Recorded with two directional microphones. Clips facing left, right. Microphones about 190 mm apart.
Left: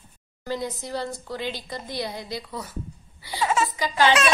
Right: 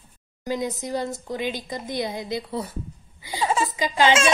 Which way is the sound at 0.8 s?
15° right (ahead or behind).